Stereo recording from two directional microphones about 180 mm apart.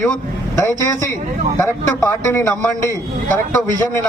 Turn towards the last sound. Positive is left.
turn(degrees=15)  # may be behind; listen again after turning